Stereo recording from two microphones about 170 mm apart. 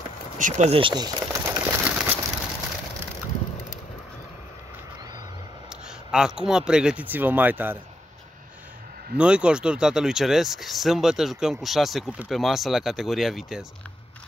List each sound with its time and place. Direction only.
0.4 s speech: 45° right (ahead or behind); by 1.6 s 25° right (ahead or behind)
1.7 s bird: 10° right (ahead or behind)
5.7 s speech: 5° right (ahead or behind)
9.1 s speech: 5° right (ahead or behind)